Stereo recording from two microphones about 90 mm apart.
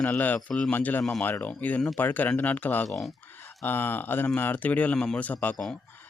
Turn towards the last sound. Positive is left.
turn(degrees=15)  # may be behind; listen again after turning